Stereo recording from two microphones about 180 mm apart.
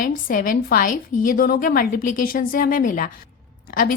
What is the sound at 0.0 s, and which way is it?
A woman's voice, 50° left (ahead or behind).